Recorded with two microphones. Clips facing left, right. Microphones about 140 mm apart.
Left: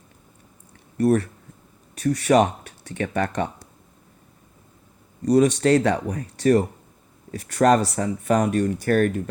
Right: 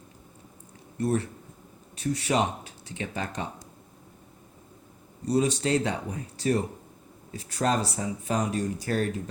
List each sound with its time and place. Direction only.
0.9 s speech: 65° left (ahead or behind)
5.2 s speech: 70° left (ahead or behind)